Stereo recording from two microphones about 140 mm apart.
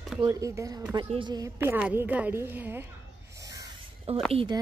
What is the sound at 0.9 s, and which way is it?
Speech, 35° right (ahead or behind).